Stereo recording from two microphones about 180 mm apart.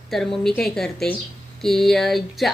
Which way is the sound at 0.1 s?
5° left (ahead or behind).